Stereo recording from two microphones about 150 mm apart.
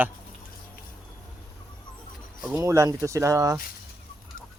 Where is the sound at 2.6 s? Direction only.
20° right (ahead or behind).